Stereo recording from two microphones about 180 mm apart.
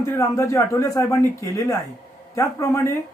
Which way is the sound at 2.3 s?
15° left (ahead or behind).